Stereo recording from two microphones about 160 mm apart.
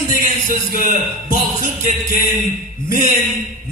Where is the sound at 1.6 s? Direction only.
55° left (ahead or behind).